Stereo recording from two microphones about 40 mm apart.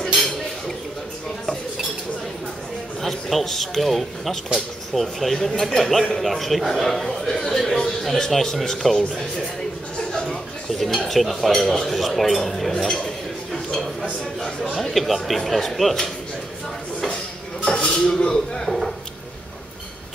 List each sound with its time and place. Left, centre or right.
3.0 s a man's voice: centre
10.7 s a man's voice: centre
12.7 s dishes: centre
14.8 s speech: centre
17.6 s dishes: left
18.2 s a man's voice: centre